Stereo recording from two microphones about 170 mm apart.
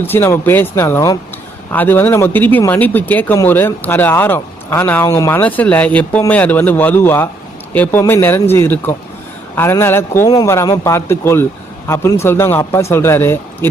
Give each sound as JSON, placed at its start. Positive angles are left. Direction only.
{"t": 0.1, "sound": "speech", "side_deg": 15}